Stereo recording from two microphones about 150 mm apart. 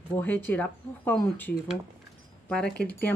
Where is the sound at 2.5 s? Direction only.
5° left (ahead or behind).